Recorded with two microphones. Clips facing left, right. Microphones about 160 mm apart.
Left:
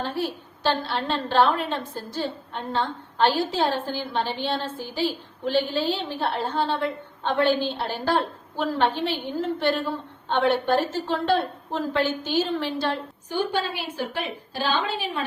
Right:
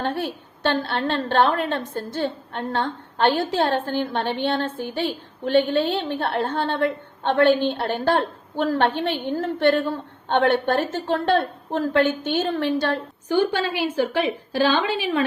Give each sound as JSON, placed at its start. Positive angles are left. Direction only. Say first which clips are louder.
{"t": 0.0, "sound": "a woman's voice", "louder": "right 2 dB", "side_deg": -60}
{"t": 13.2, "sound": "a woman's voice", "louder": "right 5 dB", "side_deg": -90}